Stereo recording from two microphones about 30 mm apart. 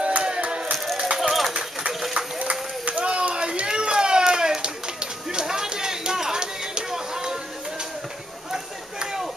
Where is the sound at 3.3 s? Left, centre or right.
Right.